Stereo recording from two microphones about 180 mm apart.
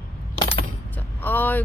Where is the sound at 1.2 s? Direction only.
10° left (ahead or behind).